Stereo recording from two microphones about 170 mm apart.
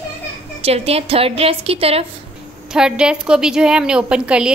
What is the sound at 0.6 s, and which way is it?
A woman's voice, 35° right (ahead or behind).